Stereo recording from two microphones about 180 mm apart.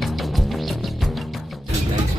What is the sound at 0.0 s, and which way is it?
Music, centre (ahead or behind).